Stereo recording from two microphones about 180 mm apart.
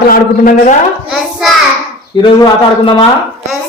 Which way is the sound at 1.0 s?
Centre (ahead or behind).